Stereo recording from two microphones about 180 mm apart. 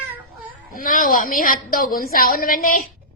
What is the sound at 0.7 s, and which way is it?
A woman's voice, 50° left (ahead or behind).